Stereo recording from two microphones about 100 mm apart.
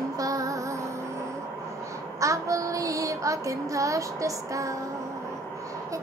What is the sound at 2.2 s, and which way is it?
Child singing, 35° right (ahead or behind).